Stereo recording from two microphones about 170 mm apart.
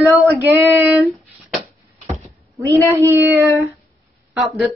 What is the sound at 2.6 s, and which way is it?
Speech, 20° right (ahead or behind).